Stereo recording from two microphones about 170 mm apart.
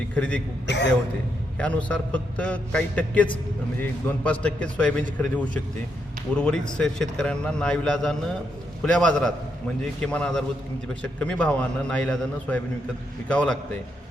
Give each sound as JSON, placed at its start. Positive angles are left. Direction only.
{"t": 0.1, "sound": "a man's voice", "side_deg": 5}
{"t": 0.7, "sound": "speech", "side_deg": 90}
{"t": 1.5, "sound": "a man's voice", "side_deg": 5}